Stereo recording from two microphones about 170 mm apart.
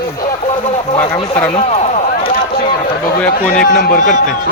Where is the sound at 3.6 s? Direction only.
60° left (ahead or behind).